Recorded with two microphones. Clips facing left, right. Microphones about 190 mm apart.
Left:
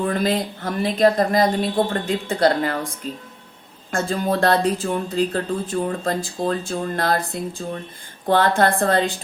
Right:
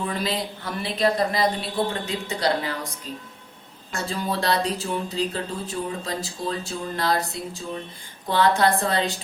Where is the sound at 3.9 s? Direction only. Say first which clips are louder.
Left 6 dB; 50° left (ahead or behind).